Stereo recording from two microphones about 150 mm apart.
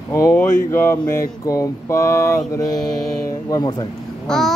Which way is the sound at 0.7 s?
15° left (ahead or behind).